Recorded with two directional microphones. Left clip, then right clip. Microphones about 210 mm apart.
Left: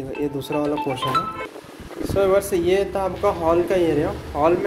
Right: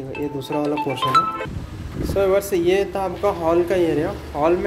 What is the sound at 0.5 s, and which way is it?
Speech, 25° right (ahead or behind).